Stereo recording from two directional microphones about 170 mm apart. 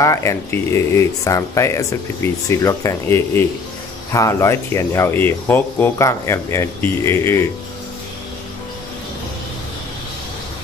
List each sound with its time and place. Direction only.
0.0 s speech: 15° left (ahead or behind)